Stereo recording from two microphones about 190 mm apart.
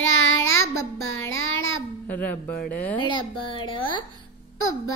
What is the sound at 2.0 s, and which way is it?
Speech, 10° left (ahead or behind).